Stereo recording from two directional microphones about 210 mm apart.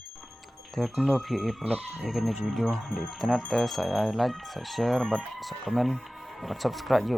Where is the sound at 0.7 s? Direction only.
Centre (ahead or behind).